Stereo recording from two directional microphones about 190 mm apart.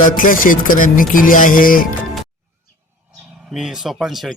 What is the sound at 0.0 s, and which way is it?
Speech, 45° left (ahead or behind).